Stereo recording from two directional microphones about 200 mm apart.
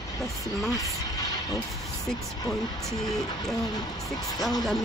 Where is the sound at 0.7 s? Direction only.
15° left (ahead or behind).